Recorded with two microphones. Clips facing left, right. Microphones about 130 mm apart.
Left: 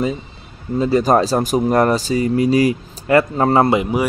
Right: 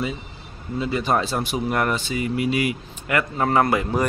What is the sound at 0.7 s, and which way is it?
Speech, 40° left (ahead or behind).